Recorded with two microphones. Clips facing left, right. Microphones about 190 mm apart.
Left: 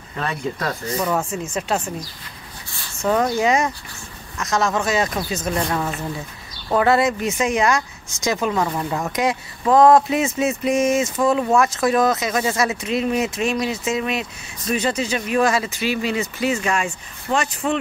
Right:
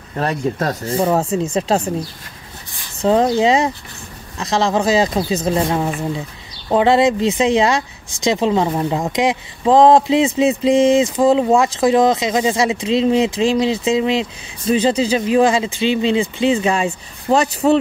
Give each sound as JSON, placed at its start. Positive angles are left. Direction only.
{"t": 0.2, "sound": "speech", "side_deg": -40}
{"t": 3.0, "sound": "speech", "side_deg": -25}